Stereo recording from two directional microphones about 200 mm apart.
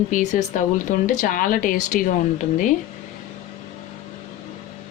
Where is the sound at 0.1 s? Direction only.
40° left (ahead or behind).